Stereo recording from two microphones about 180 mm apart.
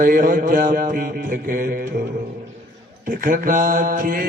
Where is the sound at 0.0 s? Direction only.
50° right (ahead or behind).